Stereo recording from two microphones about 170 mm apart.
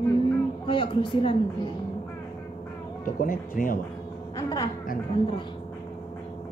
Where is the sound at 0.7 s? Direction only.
30° left (ahead or behind).